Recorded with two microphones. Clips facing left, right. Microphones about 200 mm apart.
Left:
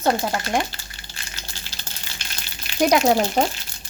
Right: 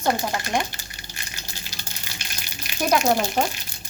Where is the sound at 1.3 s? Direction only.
15° right (ahead or behind).